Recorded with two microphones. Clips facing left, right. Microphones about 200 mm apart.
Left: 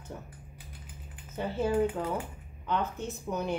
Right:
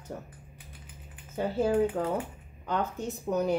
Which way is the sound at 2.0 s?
60° right (ahead or behind).